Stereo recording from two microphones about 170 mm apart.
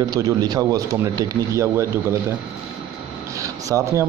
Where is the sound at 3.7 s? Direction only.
15° right (ahead or behind).